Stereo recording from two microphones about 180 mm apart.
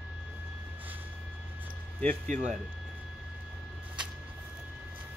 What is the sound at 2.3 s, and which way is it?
Speech, 45° right (ahead or behind).